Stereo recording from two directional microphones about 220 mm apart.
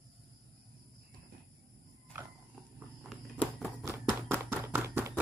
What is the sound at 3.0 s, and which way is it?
Walk, centre (ahead or behind).